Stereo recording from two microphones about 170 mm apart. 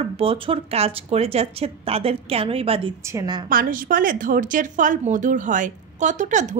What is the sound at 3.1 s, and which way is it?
Speech, 20° right (ahead or behind).